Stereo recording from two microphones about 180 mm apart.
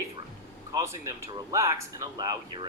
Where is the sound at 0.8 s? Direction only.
15° right (ahead or behind).